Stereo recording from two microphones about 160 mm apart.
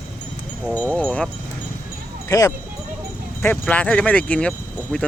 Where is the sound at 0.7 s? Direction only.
10° left (ahead or behind).